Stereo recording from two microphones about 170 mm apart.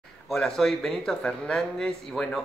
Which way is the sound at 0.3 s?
5° left (ahead or behind).